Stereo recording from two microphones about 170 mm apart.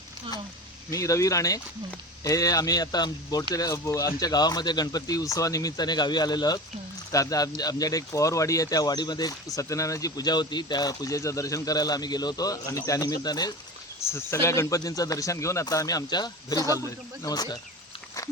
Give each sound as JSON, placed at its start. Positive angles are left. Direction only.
{"t": 0.9, "sound": "speech", "side_deg": 20}